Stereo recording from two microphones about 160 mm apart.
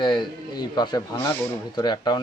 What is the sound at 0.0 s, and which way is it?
A man's voice, 30° left (ahead or behind).